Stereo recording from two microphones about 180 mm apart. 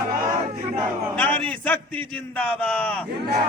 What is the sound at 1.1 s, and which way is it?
A man's voice, 5° left (ahead or behind).